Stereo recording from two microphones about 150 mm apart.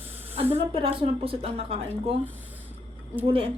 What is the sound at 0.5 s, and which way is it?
Speech, 40° right (ahead or behind).